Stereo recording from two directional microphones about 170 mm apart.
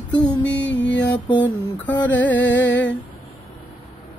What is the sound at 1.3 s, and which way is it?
Mantra, 10° left (ahead or behind).